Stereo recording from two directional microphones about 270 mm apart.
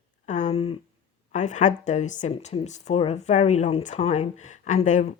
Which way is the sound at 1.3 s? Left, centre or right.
Left.